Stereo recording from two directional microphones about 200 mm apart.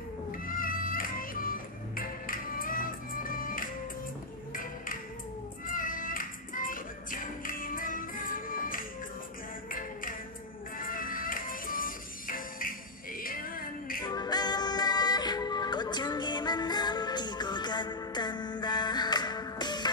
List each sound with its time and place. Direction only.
0.5 s music: 45° left (ahead or behind)
14.0 s music: 20° left (ahead or behind)